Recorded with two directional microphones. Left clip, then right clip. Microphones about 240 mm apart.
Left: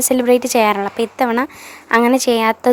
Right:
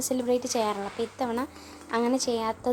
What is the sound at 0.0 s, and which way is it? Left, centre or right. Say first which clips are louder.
A woman's voice: left 13 dB; left.